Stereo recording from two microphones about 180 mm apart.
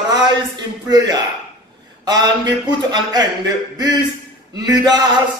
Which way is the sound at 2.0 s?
20° right (ahead or behind).